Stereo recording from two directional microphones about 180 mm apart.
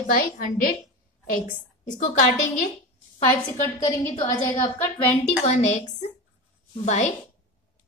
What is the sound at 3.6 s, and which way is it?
A woman's voice, 15° left (ahead or behind).